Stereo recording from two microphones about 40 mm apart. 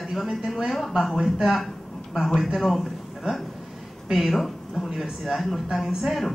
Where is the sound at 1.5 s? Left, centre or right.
Centre.